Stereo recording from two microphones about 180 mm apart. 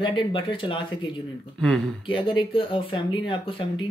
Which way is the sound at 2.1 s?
30° left (ahead or behind).